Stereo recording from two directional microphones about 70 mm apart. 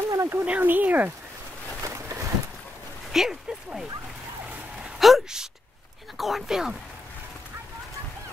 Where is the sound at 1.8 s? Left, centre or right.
Right.